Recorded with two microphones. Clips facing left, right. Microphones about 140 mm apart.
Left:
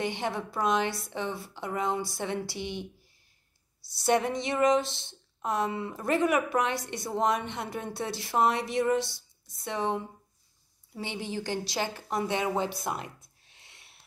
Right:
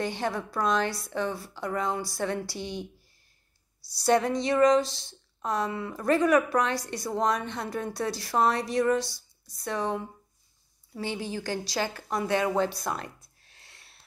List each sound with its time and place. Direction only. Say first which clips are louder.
0.0 s a woman's voice: right 1 dB; 20° left (ahead or behind)
4.0 s a woman's voice: right 2 dB; 20° left (ahead or behind)